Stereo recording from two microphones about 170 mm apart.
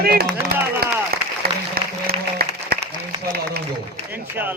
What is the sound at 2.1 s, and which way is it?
Applause, 65° right (ahead or behind).